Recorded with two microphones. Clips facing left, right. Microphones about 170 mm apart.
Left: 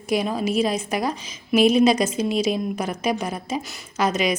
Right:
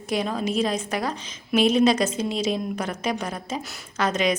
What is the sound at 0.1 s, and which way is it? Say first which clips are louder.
A woman's voice: left 3 dB; 10° left (ahead or behind).